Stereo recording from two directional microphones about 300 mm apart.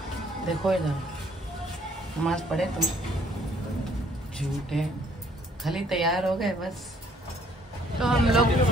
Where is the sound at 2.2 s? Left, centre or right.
Centre.